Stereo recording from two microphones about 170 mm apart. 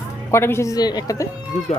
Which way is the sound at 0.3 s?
15° left (ahead or behind).